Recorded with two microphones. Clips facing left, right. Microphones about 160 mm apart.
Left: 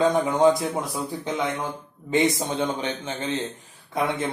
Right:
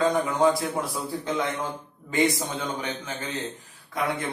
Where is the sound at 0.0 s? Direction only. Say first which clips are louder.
Left 3 dB; 20° left (ahead or behind).